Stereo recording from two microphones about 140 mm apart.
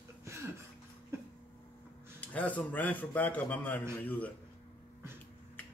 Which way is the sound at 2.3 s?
10° left (ahead or behind).